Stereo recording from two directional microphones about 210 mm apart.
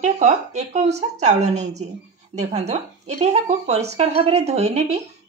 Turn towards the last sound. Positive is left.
turn(degrees=-30)  # may be behind; listen again after turning